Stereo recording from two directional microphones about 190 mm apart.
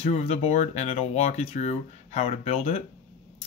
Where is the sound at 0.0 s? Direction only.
30° left (ahead or behind).